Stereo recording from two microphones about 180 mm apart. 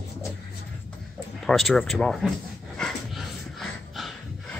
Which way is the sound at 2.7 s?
Centre (ahead or behind).